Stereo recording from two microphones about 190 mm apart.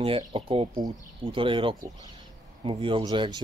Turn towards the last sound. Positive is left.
turn(degrees=-25)  # may be behind; listen again after turning